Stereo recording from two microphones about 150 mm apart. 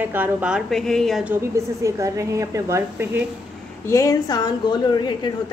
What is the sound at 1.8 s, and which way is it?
A woman's voice, 20° right (ahead or behind).